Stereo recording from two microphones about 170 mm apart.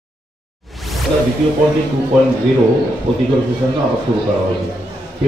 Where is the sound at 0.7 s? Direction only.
Centre (ahead or behind).